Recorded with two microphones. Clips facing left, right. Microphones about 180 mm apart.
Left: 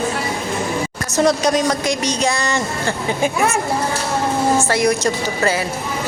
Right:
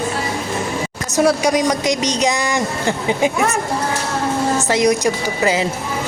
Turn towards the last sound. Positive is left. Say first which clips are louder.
# right 1 dB
turn(degrees=-15)  # may be behind; listen again after turning